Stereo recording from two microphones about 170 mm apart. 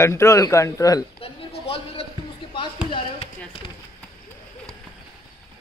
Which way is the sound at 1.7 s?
35° left (ahead or behind).